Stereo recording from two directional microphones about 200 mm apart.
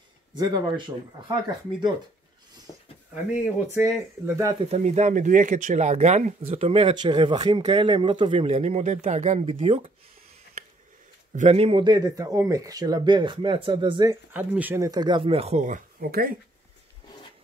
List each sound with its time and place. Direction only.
0.4 s speech: 20° right (ahead or behind)
3.7 s speech: 15° right (ahead or behind)
4.6 s speech: 35° right (ahead or behind)
11.3 s speech: 35° right (ahead or behind)
14.3 s speech: 10° right (ahead or behind); by 16.3 s 45° right (ahead or behind)